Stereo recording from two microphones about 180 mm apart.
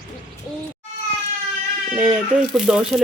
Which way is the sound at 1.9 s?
5° right (ahead or behind).